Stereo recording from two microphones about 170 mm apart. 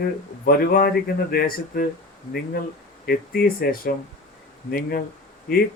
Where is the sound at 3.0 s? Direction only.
60° left (ahead or behind).